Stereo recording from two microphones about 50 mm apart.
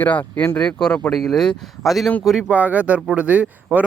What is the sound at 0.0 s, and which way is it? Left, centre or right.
Speech, left.